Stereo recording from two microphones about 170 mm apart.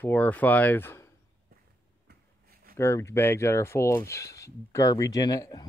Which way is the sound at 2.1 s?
65° right (ahead or behind).